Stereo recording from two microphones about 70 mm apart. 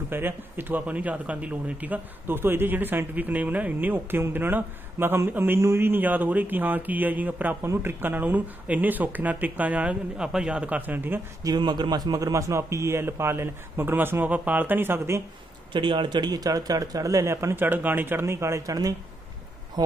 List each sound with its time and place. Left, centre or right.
0.1 s speech: right
7.6 s speech: right
11.4 s a man's voice: right
12.3 s a man's voice: right
16.0 s speech: right
17.6 s speech: right
18.2 s speech: right
18.7 s speech: right